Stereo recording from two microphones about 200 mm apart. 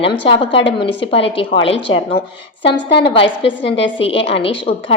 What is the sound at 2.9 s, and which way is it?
A woman's voice, 55° left (ahead or behind).